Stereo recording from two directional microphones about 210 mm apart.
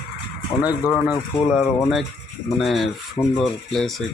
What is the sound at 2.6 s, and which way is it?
Speech, centre (ahead or behind).